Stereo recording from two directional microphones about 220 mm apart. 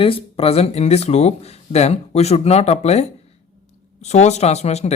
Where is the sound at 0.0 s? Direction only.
25° left (ahead or behind).